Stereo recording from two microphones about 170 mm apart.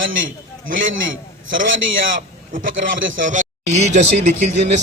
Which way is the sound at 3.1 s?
50° right (ahead or behind).